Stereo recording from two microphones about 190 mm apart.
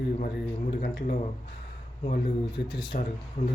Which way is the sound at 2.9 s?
50° left (ahead or behind).